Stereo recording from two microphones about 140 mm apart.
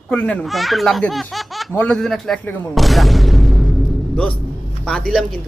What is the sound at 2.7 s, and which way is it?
Speech, centre (ahead or behind).